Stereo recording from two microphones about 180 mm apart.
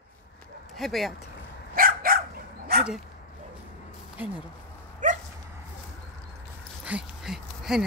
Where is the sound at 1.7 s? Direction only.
55° right (ahead or behind).